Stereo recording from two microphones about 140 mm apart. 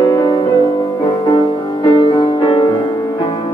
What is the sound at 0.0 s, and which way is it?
Music, 35° left (ahead or behind).